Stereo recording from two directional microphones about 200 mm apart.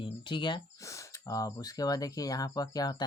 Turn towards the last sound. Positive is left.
turn(degrees=20)  # may be behind; listen again after turning